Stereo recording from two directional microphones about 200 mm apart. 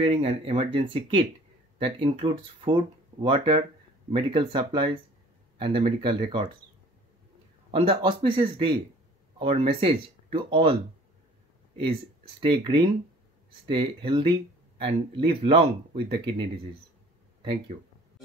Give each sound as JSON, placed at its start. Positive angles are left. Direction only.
{"t": 0.0, "sound": "speech", "side_deg": -30}
{"t": 7.7, "sound": "speech", "side_deg": -25}
{"t": 12.4, "sound": "speech", "side_deg": -25}